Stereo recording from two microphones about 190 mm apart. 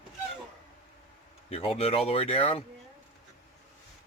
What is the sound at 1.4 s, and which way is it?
Speech, 30° left (ahead or behind).